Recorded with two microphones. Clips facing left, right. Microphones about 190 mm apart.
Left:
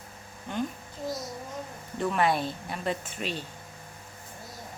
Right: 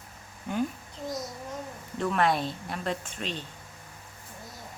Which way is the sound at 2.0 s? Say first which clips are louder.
Even; 5° left (ahead or behind).